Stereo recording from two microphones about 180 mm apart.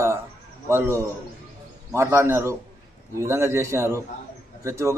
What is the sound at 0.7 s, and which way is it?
A man's voice, 15° right (ahead or behind).